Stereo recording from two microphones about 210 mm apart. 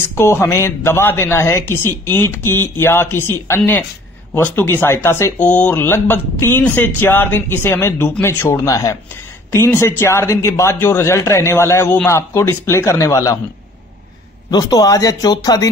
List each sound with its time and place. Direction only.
0.1 s speech: 10° left (ahead or behind)
14.5 s speech: 15° left (ahead or behind)